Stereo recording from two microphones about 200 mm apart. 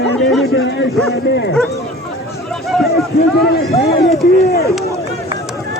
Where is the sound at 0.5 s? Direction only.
65° left (ahead or behind).